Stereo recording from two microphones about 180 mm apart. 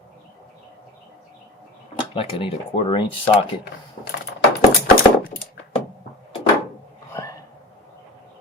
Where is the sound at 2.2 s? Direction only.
30° left (ahead or behind).